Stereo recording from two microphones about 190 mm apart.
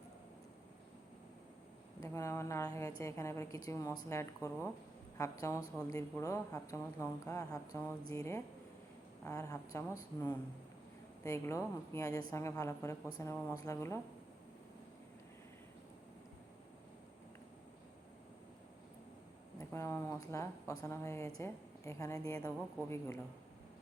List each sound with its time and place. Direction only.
2.0 s a woman's voice: 15° left (ahead or behind)
19.5 s a woman's voice: 15° left (ahead or behind)